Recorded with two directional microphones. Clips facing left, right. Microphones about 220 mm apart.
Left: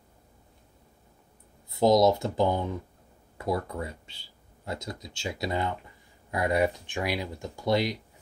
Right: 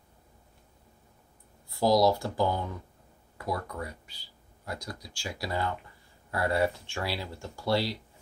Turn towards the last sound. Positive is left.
turn(degrees=20)  # may be behind; listen again after turning